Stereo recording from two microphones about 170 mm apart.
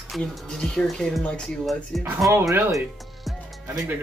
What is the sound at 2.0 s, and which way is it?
Speech, 15° right (ahead or behind).